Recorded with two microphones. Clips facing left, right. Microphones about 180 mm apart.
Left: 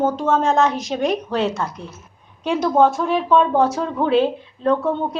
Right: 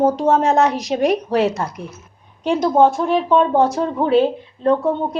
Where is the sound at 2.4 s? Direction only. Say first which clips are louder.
Right 2 dB; 15° right (ahead or behind).